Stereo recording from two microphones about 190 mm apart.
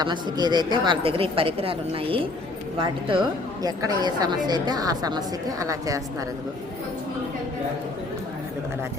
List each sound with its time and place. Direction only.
0.0 s a woman's voice: 20° right (ahead or behind)